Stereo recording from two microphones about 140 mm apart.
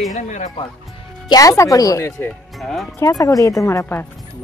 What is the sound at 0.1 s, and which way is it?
Speech, 60° left (ahead or behind).